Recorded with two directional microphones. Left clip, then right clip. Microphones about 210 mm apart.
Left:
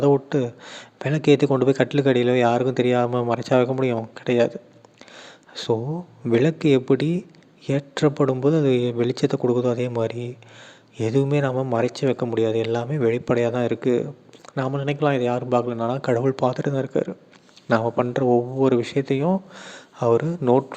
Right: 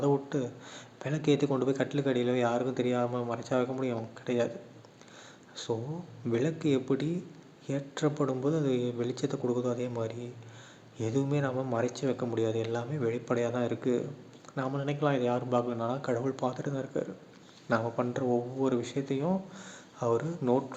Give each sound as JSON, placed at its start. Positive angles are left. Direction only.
{"t": 0.0, "sound": "speech", "side_deg": 40}